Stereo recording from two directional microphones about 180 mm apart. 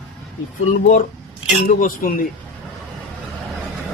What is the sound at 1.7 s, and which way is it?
Speech, 50° left (ahead or behind).